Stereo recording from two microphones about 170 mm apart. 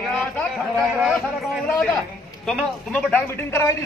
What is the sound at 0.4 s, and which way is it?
A man's voice, centre (ahead or behind).